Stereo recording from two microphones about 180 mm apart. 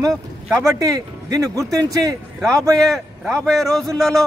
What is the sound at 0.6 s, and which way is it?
Speech, 20° right (ahead or behind).